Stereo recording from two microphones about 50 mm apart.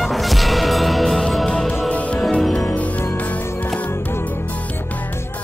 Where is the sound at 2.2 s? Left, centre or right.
Centre.